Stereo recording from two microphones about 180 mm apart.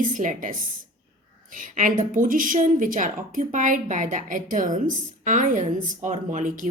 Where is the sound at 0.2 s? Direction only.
45° right (ahead or behind).